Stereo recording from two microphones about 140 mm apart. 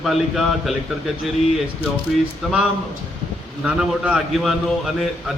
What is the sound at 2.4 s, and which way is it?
Speech, 5° right (ahead or behind).